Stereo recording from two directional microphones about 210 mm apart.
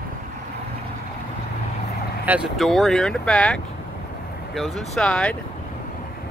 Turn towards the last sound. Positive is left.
turn(degrees=5)  # may be behind; listen again after turning